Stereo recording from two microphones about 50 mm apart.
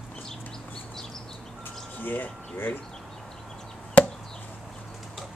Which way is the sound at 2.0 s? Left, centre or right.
Left.